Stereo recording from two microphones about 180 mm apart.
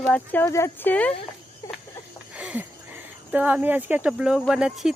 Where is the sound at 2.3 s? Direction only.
10° right (ahead or behind).